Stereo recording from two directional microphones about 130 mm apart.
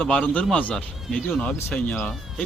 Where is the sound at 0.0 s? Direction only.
10° left (ahead or behind).